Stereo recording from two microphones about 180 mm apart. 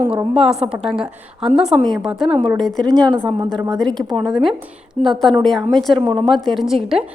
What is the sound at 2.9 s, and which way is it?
Speech, 25° right (ahead or behind).